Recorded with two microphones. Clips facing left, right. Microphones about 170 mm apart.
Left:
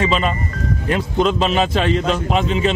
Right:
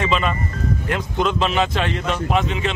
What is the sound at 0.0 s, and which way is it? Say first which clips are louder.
A man's voice: left 2 dB; 30° left (ahead or behind).